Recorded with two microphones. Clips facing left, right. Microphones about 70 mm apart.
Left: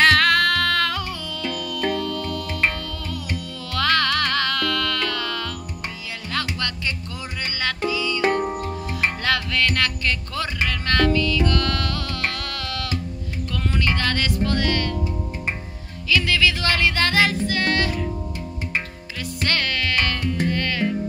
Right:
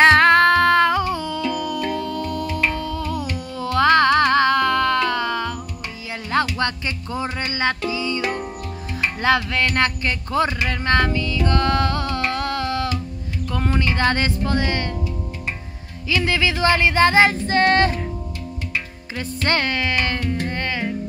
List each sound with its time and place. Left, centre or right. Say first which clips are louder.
0.0 s music: right 5 dB; right
9.2 s music: right 6 dB; right
13.5 s speech: right 2 dB; right
16.1 s music: even; right
19.1 s music: right 4 dB; right